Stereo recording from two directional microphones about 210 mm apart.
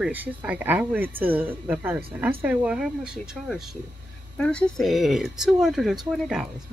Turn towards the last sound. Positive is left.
turn(degrees=0)  # may be behind; listen again after turning